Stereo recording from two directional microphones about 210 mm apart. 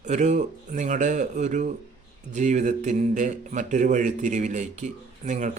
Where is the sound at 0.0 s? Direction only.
35° right (ahead or behind).